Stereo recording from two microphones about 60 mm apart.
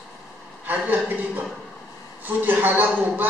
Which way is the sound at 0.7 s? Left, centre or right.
Right.